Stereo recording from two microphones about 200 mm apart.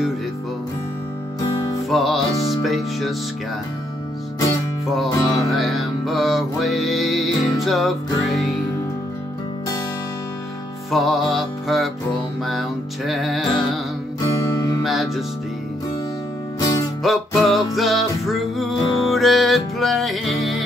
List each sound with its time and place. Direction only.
1.9 s music: centre (ahead or behind)
4.9 s music: centre (ahead or behind)
10.9 s music: centre (ahead or behind)
14.8 s music: centre (ahead or behind)
16.5 s music: 20° left (ahead or behind)
17.0 s music: centre (ahead or behind)